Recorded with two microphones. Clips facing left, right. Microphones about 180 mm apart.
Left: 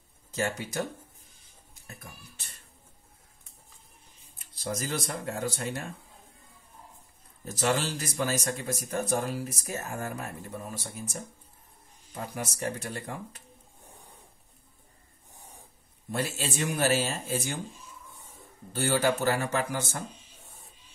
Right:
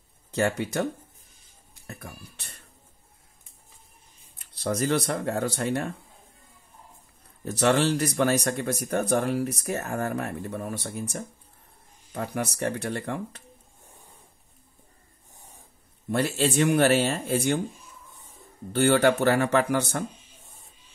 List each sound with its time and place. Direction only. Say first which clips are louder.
0.3 s speech: right 6 dB; 60° right (ahead or behind)
1.9 s speech: right 6 dB; 65° right (ahead or behind)
4.6 s speech: right 8 dB; 60° right (ahead or behind)
7.4 s speech: right 6 dB; 65° right (ahead or behind)
16.1 s speech: right 7 dB; 65° right (ahead or behind)
18.7 s speech: right 6 dB; 60° right (ahead or behind)